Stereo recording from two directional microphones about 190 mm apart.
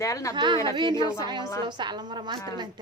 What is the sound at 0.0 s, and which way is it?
Speech, 15° left (ahead or behind).